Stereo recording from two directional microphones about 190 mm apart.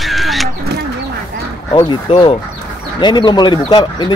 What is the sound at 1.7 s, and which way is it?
Speech, 25° left (ahead or behind).